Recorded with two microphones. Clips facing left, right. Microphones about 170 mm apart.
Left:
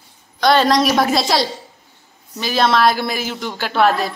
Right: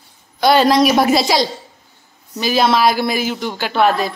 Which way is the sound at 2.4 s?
5° right (ahead or behind).